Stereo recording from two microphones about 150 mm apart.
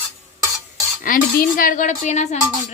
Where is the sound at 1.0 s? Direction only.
65° left (ahead or behind); by 2.3 s 50° left (ahead or behind).